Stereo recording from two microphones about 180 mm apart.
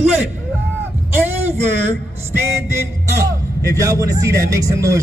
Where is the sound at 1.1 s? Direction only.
10° right (ahead or behind).